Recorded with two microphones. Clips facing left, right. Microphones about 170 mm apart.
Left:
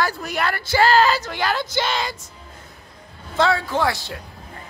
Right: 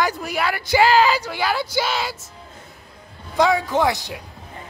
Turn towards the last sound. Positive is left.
turn(degrees=-15)  # may be behind; listen again after turning